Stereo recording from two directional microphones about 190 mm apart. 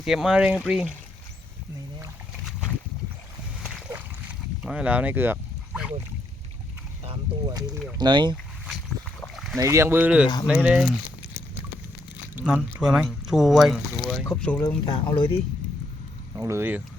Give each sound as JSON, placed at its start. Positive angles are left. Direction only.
{"t": 0.0, "sound": "speech", "side_deg": 0}
{"t": 2.4, "sound": "boat", "side_deg": 0}
{"t": 3.6, "sound": "splash", "side_deg": -5}
{"t": 4.6, "sound": "speech", "side_deg": -5}
{"t": 7.4, "sound": "speech", "side_deg": -20}
{"t": 9.2, "sound": "rowboat", "side_deg": 0}
{"t": 9.6, "sound": "speech", "side_deg": -15}
{"t": 12.4, "sound": "speech", "side_deg": -10}
{"t": 14.8, "sound": "speech", "side_deg": 25}
{"t": 16.4, "sound": "speech", "side_deg": -10}